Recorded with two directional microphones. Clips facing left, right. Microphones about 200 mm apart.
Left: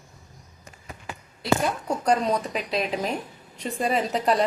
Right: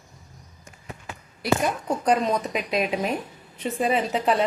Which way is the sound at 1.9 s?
5° right (ahead or behind).